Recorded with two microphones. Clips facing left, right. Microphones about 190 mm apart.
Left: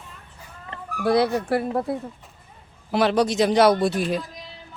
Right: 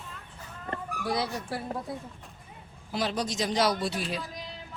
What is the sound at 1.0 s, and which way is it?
Speech, 65° left (ahead or behind).